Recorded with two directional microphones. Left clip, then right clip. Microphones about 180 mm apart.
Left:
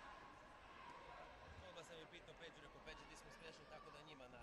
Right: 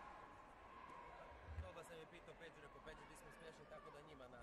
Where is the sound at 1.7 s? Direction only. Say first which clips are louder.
Left 1 dB; 45° right (ahead or behind).